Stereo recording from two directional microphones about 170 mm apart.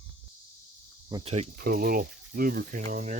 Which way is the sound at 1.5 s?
60° right (ahead or behind).